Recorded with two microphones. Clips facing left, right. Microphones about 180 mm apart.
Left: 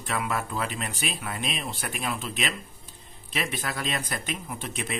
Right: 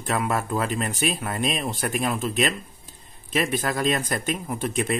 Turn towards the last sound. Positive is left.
turn(degrees=-45)  # may be behind; listen again after turning